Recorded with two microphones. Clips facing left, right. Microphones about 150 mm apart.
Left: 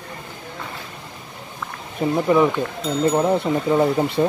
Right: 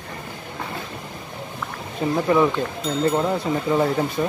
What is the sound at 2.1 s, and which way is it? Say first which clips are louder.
Speech: left 1 dB; 10° left (ahead or behind).